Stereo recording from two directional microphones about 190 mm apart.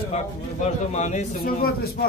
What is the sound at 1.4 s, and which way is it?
Speech, 50° left (ahead or behind).